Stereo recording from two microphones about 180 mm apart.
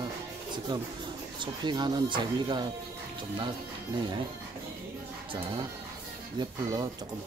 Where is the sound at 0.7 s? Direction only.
25° right (ahead or behind).